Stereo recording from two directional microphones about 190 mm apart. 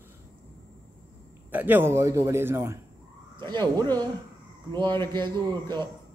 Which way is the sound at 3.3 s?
25° right (ahead or behind).